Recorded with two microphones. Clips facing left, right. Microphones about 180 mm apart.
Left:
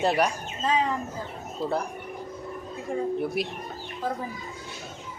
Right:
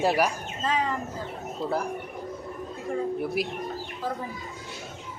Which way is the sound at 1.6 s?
Centre (ahead or behind).